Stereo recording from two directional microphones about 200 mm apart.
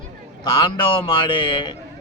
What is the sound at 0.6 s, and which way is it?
Speech, 25° left (ahead or behind).